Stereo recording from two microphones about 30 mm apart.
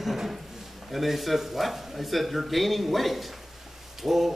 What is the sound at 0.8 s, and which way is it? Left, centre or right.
A man's voice, centre.